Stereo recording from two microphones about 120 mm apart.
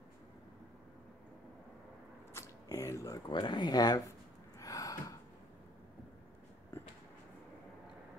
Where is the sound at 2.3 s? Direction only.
25° left (ahead or behind).